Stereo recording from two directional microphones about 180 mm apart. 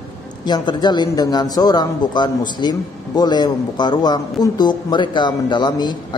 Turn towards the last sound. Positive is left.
turn(degrees=25)  # may be behind; listen again after turning